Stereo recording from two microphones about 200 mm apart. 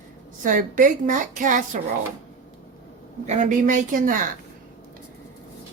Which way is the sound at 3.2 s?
35° right (ahead or behind).